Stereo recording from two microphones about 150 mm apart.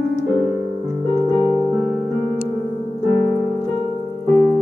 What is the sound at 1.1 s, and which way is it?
Keyboard, 15° left (ahead or behind).